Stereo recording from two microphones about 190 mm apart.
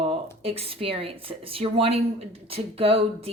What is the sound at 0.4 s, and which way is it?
A woman's voice, 30° right (ahead or behind).